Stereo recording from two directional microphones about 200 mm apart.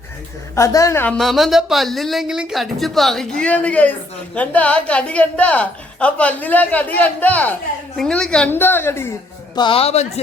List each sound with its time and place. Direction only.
0.5 s a woman's voice: 15° left (ahead or behind)
9.6 s a man's voice: 25° left (ahead or behind)